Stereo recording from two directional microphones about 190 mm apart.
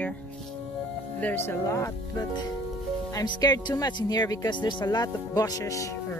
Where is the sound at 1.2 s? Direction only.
10° left (ahead or behind).